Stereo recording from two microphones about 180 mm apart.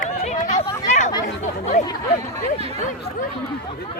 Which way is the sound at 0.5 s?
40° left (ahead or behind).